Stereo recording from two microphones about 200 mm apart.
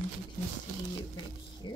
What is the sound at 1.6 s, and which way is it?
Speech, 20° left (ahead or behind).